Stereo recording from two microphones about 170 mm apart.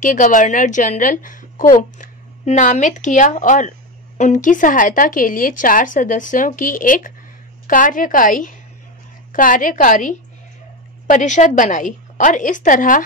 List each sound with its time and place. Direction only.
0.0 s a woman's voice: 50° left (ahead or behind)